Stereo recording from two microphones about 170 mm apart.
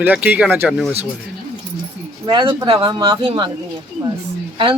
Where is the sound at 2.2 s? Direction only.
30° right (ahead or behind).